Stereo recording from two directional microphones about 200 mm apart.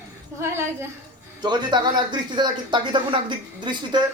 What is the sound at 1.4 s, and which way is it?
Speech, 20° right (ahead or behind).